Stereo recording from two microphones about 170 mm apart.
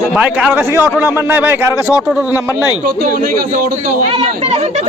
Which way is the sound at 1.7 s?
20° left (ahead or behind).